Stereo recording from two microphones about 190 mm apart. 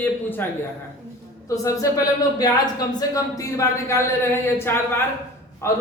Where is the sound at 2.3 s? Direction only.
20° left (ahead or behind).